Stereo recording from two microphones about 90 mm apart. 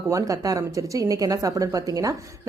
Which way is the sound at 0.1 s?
40° right (ahead or behind).